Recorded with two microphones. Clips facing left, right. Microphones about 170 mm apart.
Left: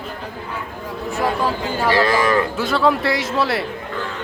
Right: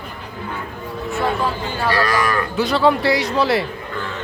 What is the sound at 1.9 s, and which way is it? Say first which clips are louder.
Speech: left 3 dB; 25° left (ahead or behind).